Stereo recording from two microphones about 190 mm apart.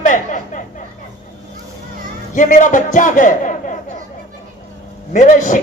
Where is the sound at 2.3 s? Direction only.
40° left (ahead or behind).